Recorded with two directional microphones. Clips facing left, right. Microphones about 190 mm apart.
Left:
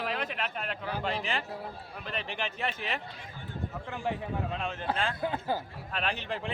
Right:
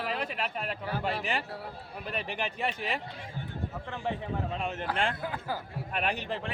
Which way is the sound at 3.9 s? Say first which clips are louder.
Even; 5° left (ahead or behind).